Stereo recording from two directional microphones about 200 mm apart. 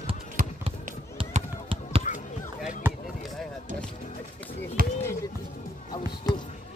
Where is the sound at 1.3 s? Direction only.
30° right (ahead or behind).